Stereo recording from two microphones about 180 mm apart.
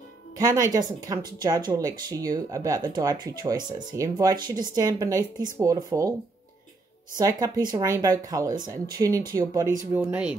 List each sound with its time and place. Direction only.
0.5 s speech: 20° right (ahead or behind)
7.2 s speech: 20° right (ahead or behind)
9.9 s speech: 5° right (ahead or behind)